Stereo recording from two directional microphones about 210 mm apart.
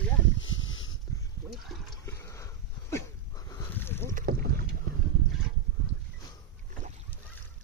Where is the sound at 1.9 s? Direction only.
15° left (ahead or behind).